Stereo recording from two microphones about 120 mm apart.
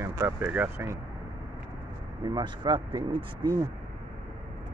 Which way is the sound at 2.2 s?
40° right (ahead or behind).